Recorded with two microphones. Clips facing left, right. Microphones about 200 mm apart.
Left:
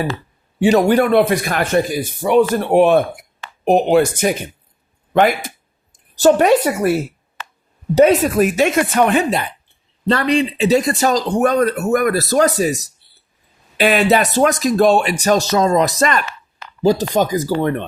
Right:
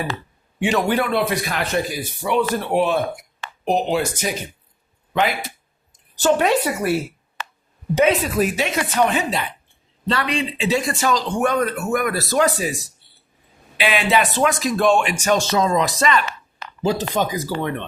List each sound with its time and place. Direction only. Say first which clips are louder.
0.6 s a woman's voice: left 7 dB; 40° left (ahead or behind)
7.9 s speech: left 6 dB; 40° left (ahead or behind)
10.1 s speech: left 7 dB; 40° left (ahead or behind)